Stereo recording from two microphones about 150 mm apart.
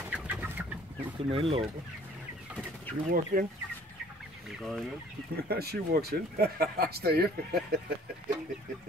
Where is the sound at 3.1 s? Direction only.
70° right (ahead or behind).